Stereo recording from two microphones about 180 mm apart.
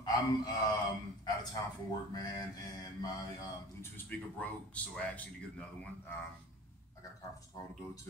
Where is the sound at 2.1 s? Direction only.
25° left (ahead or behind).